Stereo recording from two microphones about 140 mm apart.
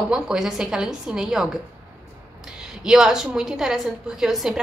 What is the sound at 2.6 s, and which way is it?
A woman's voice, 5° right (ahead or behind).